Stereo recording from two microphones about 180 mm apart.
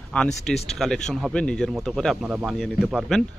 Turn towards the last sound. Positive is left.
turn(degrees=0)  # may be behind; listen again after turning